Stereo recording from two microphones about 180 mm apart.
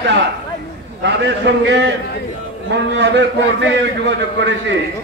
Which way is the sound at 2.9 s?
80° right.